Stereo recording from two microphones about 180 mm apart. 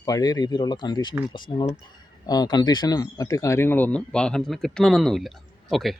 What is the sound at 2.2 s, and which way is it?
Speech, 20° left (ahead or behind).